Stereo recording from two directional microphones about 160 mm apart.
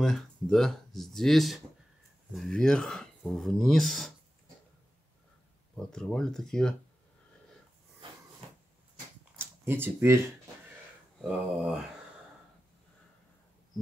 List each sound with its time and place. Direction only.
0.0 s speech: centre (ahead or behind)
5.8 s speech: 5° left (ahead or behind)
8.0 s cupboard open or close: 30° right (ahead or behind)
9.4 s speech: 15° right (ahead or behind)
11.1 s speech: 5° right (ahead or behind)